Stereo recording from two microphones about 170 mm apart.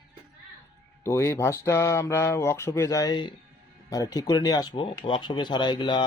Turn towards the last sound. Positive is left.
turn(degrees=25)  # may be behind; listen again after turning